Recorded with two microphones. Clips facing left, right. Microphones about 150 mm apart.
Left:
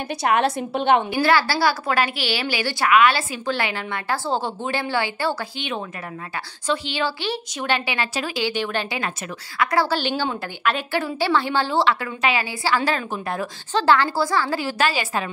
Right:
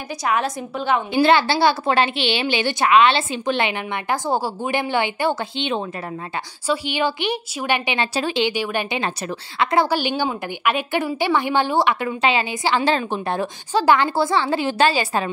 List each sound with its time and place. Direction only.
0.2 s a woman's voice: 65° left (ahead or behind)
1.1 s a woman's voice: 20° right (ahead or behind)
8.5 s a woman's voice: 15° right (ahead or behind)
9.6 s a woman's voice: 25° right (ahead or behind)
9.8 s a woman's voice: 15° right (ahead or behind); by 13.5 s 30° right (ahead or behind)
13.7 s a woman's voice: 15° right (ahead or behind)